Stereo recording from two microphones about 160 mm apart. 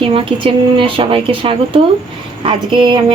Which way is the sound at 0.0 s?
35° right (ahead or behind).